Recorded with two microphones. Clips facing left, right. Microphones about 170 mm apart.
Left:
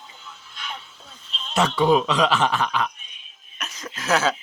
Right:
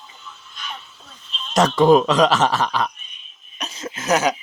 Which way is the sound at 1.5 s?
45° right (ahead or behind).